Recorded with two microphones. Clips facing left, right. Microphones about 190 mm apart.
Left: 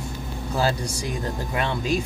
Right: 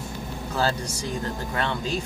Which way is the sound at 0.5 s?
10° left (ahead or behind).